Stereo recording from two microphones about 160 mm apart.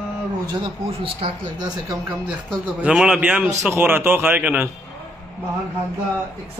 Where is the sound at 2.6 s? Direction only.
5° right (ahead or behind).